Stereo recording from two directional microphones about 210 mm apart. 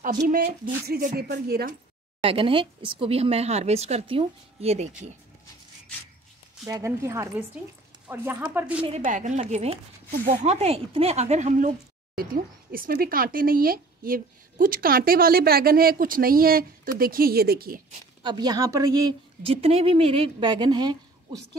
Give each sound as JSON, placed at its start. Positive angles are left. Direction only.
{"t": 0.2, "sound": "speech", "side_deg": -45}
{"t": 2.2, "sound": "speech", "side_deg": -25}
{"t": 6.6, "sound": "speech", "side_deg": -15}
{"t": 8.8, "sound": "speech", "side_deg": -35}
{"t": 18.2, "sound": "speech", "side_deg": -20}